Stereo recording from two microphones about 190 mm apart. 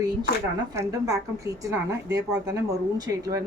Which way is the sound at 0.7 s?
20° right (ahead or behind).